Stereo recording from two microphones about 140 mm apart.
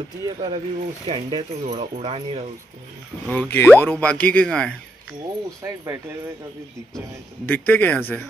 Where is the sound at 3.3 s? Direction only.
10° left (ahead or behind).